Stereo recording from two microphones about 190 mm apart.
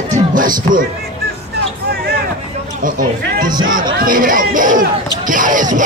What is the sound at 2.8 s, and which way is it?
Speech, 45° right (ahead or behind).